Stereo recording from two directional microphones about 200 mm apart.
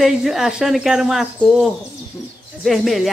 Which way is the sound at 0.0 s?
Centre (ahead or behind).